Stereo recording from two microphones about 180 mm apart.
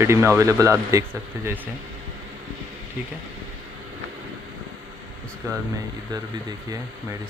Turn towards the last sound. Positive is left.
turn(degrees=-15)  # may be behind; listen again after turning